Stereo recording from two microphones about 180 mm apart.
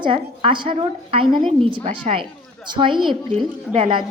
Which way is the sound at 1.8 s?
45° right (ahead or behind).